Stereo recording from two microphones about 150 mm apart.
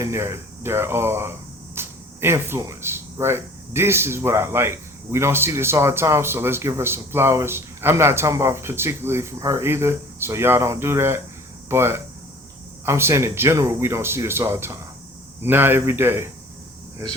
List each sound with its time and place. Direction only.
0.0 s speech: 20° right (ahead or behind)